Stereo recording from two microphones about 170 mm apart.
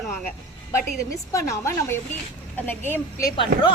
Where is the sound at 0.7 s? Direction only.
20° left (ahead or behind).